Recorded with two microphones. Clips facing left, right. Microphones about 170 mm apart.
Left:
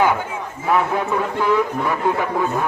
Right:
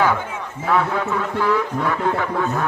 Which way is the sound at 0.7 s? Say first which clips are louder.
Left 1 dB; 20° left (ahead or behind).